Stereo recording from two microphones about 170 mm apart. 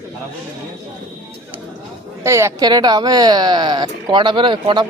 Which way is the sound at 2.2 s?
15° right (ahead or behind).